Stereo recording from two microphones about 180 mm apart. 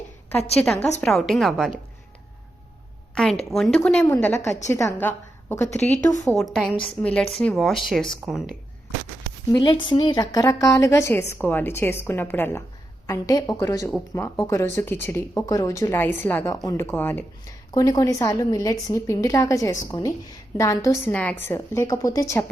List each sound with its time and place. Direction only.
0.6 s speech: 5° left (ahead or behind)
3.5 s a woman's voice: 5° left (ahead or behind)
5.6 s a woman's voice: 40° left (ahead or behind)
6.2 s speech: centre (ahead or behind)
9.5 s a woman's voice: 25° left (ahead or behind)